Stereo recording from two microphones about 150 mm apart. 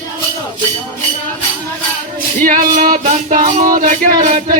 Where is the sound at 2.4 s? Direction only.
65° right (ahead or behind).